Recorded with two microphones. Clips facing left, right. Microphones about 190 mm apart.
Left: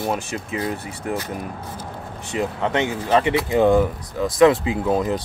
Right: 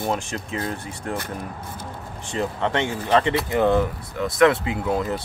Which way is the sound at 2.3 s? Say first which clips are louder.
Left 2 dB; 15° left (ahead or behind).